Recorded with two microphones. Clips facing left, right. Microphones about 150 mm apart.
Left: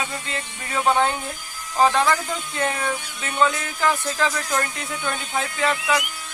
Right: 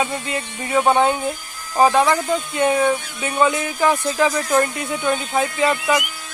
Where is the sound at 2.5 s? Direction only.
10° right (ahead or behind).